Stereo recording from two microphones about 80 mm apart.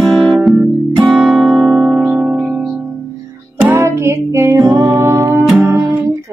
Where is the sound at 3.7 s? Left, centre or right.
Right.